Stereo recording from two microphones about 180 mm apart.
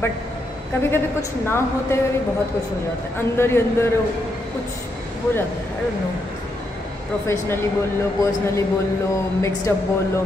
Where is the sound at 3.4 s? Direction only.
15° left (ahead or behind).